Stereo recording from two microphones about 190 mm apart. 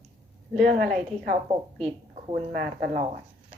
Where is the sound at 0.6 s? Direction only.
50° right (ahead or behind).